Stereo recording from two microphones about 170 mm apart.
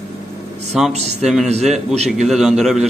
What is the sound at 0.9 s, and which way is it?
Speech, 40° right (ahead or behind).